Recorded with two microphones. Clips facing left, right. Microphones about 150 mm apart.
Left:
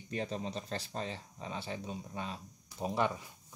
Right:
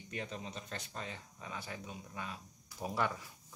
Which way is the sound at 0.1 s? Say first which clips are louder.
Left 6 dB; 35° left (ahead or behind).